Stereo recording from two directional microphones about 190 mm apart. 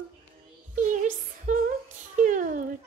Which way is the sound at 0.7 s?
40° right (ahead or behind).